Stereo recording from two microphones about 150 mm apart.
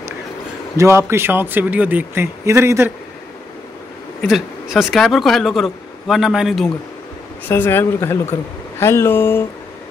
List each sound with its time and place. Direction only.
0.7 s speech: 20° right (ahead or behind)
4.3 s speech: centre (ahead or behind)
7.4 s speech: 15° left (ahead or behind)